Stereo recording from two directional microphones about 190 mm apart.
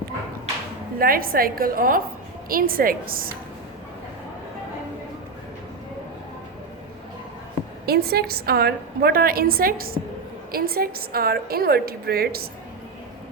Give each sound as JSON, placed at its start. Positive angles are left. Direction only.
{"t": 0.9, "sound": "a woman's voice", "side_deg": -50}
{"t": 7.9, "sound": "a woman's voice", "side_deg": -55}